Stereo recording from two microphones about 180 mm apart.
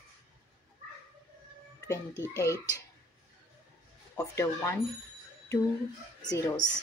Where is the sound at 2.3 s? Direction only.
15° left (ahead or behind).